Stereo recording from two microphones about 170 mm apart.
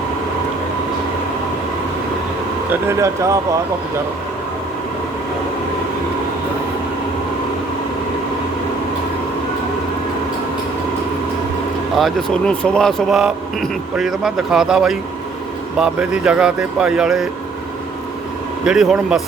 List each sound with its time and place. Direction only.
2.8 s speech: 15° right (ahead or behind)
11.9 s speech: centre (ahead or behind)
18.6 s speech: 5° right (ahead or behind)